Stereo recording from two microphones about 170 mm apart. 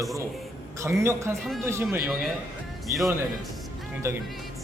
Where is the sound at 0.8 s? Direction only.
15° right (ahead or behind).